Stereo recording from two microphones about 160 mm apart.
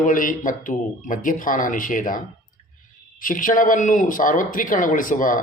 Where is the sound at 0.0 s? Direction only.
55° left (ahead or behind).